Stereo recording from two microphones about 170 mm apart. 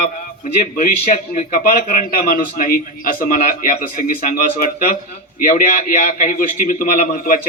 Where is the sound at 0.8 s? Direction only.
55° left (ahead or behind).